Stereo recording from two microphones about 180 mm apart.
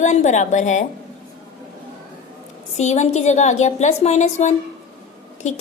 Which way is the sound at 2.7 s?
40° left (ahead or behind).